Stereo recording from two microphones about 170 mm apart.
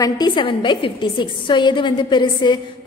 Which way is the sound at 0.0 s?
25° left (ahead or behind).